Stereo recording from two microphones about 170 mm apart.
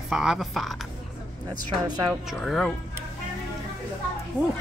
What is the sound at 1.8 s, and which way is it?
Speech, 25° right (ahead or behind).